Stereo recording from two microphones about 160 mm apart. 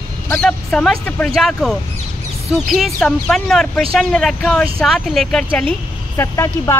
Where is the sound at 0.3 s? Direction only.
5° left (ahead or behind).